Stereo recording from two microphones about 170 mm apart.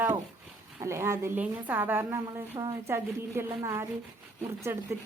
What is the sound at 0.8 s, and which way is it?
A woman's voice, 15° right (ahead or behind).